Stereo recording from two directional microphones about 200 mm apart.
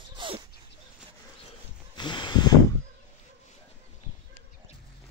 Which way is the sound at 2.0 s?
20° left (ahead or behind).